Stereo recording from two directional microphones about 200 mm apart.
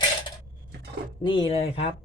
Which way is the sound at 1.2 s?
25° left (ahead or behind).